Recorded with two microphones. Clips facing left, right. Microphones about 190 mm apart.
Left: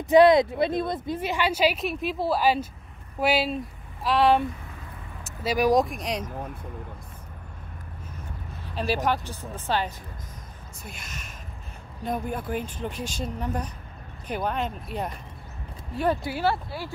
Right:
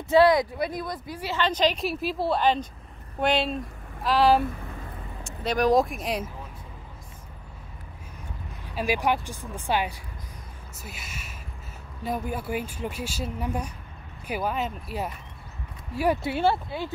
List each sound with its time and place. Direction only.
0.0 s a woman's voice: 20° left (ahead or behind); by 6.3 s 5° right (ahead or behind)
8.7 s speech: 10° right (ahead or behind)
10.8 s a sound: 5° right (ahead or behind)
12.0 s speech: 5° right (ahead or behind)
16.2 s speech: 25° right (ahead or behind)